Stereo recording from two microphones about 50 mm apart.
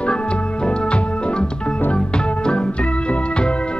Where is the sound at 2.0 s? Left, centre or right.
Centre.